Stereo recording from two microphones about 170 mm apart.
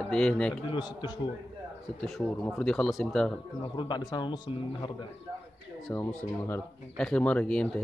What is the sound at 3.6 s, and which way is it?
Speech, 25° left (ahead or behind).